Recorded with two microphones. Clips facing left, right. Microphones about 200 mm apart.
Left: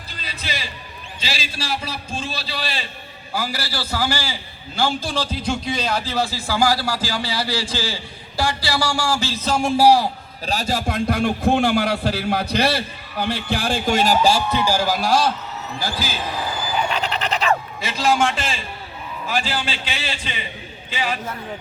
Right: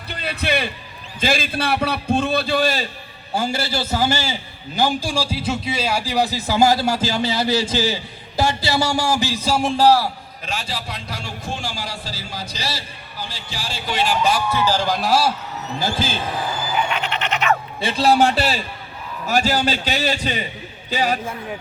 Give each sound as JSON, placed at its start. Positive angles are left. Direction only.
{"t": 0.1, "sound": "a sound", "side_deg": -60}
{"t": 1.2, "sound": "a man's voice", "side_deg": -55}
{"t": 3.3, "sound": "a man's voice", "side_deg": -25}
{"t": 9.7, "sound": "a man's voice", "side_deg": 15}
{"t": 10.4, "sound": "a man's voice", "side_deg": 40}
{"t": 14.5, "sound": "a man's voice", "side_deg": 10}
{"t": 15.8, "sound": "a man's voice", "side_deg": -25}
{"t": 16.9, "sound": "goat", "side_deg": 35}
{"t": 17.7, "sound": "a man's voice", "side_deg": -30}